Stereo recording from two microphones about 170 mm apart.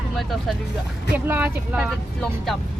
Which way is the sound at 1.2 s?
10° right (ahead or behind).